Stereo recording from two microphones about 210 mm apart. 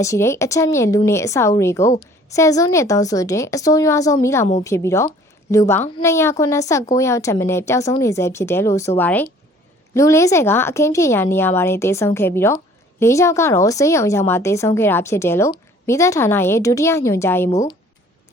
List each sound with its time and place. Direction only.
0.0 s a woman's voice: 15° left (ahead or behind)